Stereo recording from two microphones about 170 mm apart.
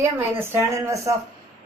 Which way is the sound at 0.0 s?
15° right (ahead or behind).